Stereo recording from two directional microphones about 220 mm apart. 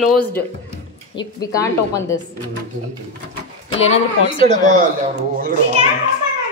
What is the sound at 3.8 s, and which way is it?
Speech, 60° left (ahead or behind).